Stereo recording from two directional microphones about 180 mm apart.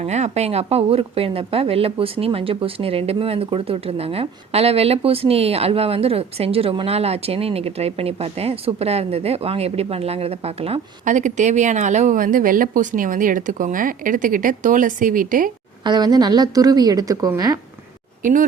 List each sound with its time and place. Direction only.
0.0 s speech: 40° right (ahead or behind)
15.8 s a woman's voice: 25° right (ahead or behind)
18.2 s speech: 45° right (ahead or behind)